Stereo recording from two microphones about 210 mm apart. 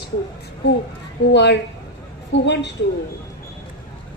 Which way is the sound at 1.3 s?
55° left (ahead or behind).